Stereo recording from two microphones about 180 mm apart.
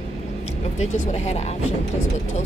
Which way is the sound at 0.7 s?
40° left (ahead or behind).